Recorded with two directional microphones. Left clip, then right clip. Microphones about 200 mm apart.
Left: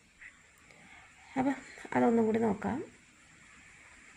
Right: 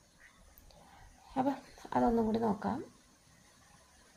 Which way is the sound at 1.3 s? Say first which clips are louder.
Left 1 dB; 10° left (ahead or behind).